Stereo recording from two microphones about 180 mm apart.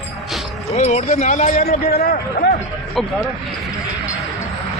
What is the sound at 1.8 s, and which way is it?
Speech, 60° left (ahead or behind).